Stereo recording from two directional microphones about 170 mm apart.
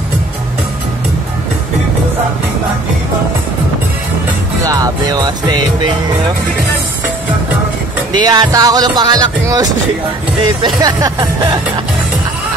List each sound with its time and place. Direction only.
4.6 s speech: 20° right (ahead or behind)
8.1 s music: 25° right (ahead or behind)